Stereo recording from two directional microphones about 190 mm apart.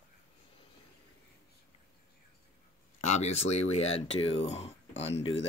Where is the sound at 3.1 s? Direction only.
35° left (ahead or behind).